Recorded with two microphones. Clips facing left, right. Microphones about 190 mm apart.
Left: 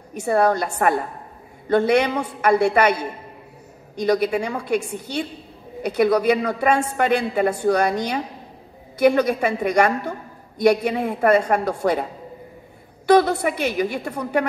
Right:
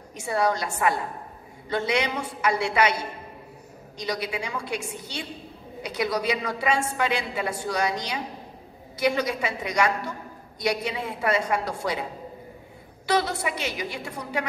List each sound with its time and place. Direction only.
0.1 s a woman's voice: 55° left (ahead or behind)